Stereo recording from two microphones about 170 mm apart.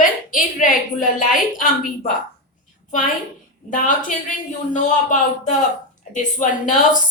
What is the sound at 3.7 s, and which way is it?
Speech, 50° left (ahead or behind).